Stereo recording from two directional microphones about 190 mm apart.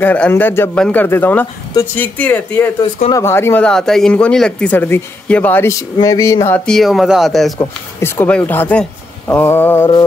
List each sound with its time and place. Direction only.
0.0 s speech: 10° left (ahead or behind)
7.5 s speech: 10° left (ahead or behind)